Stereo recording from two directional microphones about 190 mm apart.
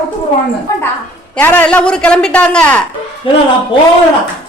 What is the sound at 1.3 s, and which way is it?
A woman's voice, 10° left (ahead or behind).